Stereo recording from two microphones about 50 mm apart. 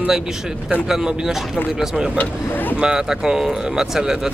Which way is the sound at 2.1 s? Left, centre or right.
Left.